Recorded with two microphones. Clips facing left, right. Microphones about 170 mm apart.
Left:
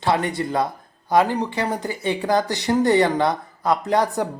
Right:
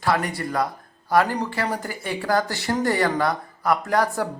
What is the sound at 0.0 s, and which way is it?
Speech, 25° left (ahead or behind).